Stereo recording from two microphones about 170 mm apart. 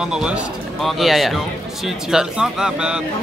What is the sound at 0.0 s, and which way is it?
Speech, 5° right (ahead or behind).